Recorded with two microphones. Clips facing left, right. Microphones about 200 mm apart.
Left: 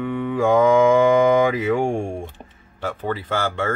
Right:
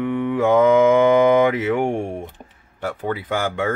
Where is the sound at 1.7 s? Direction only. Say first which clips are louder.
Even; 20° right (ahead or behind).